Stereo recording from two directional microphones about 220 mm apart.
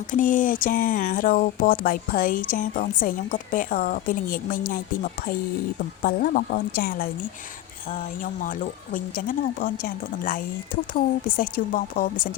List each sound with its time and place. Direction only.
0.1 s speech: 35° left (ahead or behind)
6.0 s speech: 40° left (ahead or behind)
8.2 s speech: 40° left (ahead or behind)